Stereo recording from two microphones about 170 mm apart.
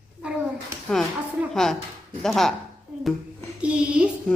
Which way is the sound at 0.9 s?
5° left (ahead or behind).